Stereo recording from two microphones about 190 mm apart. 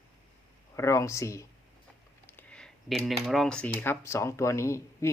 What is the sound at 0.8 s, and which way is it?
Speech, 15° left (ahead or behind).